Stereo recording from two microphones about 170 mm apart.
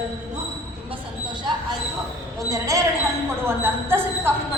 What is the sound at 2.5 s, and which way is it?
Speech, 20° right (ahead or behind).